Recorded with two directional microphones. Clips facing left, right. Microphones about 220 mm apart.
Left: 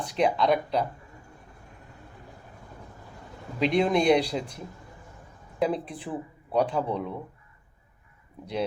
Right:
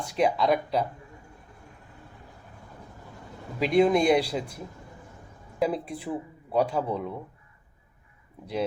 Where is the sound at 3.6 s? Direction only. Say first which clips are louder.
Right 2 dB; 5° right (ahead or behind).